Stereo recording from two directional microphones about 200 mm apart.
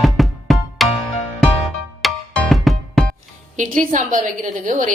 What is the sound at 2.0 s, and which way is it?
Music, centre (ahead or behind).